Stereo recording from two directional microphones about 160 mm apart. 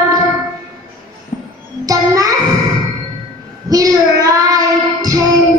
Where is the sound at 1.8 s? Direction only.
20° right (ahead or behind).